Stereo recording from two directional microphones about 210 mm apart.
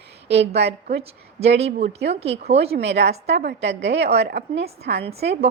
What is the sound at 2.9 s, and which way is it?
A woman's voice, 55° right (ahead or behind).